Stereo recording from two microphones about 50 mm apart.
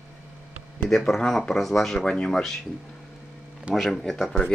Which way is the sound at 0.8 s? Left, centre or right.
Centre.